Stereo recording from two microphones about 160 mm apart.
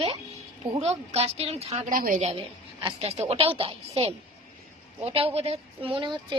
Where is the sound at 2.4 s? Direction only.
35° right (ahead or behind).